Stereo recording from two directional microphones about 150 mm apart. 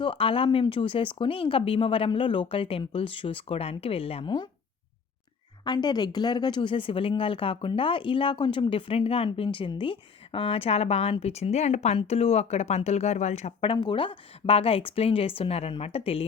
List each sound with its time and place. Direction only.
0.0 s speech: 35° left (ahead or behind)
5.6 s speech: 30° left (ahead or behind)
13.7 s speech: 35° left (ahead or behind)